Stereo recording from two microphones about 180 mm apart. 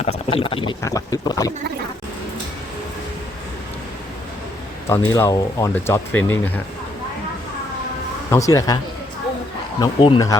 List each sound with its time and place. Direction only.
0.0 s speech: 35° left (ahead or behind)
4.9 s speech: 15° left (ahead or behind)
8.3 s speech: 15° left (ahead or behind)
9.8 s speech: 20° left (ahead or behind)